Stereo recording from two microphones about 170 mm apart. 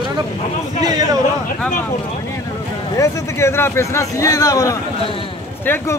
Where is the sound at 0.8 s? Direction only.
20° right (ahead or behind).